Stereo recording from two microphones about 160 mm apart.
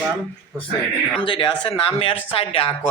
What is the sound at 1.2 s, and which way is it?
Speech, 30° left (ahead or behind).